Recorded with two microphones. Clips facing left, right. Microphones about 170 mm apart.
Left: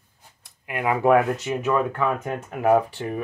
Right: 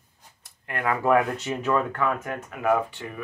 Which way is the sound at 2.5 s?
35° left (ahead or behind).